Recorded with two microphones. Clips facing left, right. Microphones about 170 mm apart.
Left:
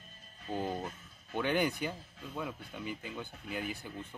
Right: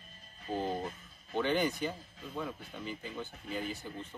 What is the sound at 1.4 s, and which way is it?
Speech, 10° left (ahead or behind).